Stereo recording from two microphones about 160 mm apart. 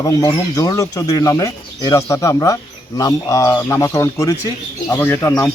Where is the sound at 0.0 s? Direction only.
20° left (ahead or behind).